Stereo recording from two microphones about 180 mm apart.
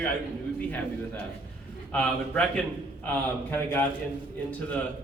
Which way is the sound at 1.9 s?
5° left (ahead or behind).